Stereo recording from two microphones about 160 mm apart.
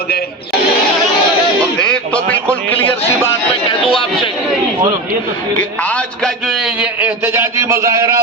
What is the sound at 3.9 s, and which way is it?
Speech, 30° left (ahead or behind).